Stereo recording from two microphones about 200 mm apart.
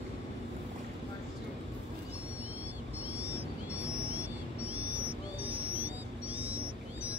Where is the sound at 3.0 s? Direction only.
10° right (ahead or behind).